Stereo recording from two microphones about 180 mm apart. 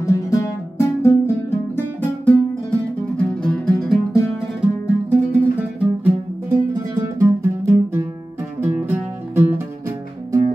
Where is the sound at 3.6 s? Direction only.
5° left (ahead or behind).